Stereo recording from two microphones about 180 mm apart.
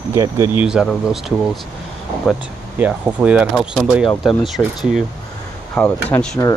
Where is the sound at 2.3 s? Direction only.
Centre (ahead or behind).